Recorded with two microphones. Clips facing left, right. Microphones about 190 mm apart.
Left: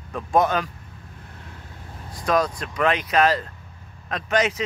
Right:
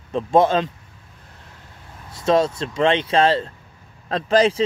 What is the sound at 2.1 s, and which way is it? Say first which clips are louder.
Speech: right 4 dB; 25° right (ahead or behind).